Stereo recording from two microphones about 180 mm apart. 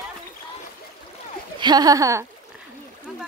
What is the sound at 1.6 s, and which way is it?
Speech, 20° right (ahead or behind).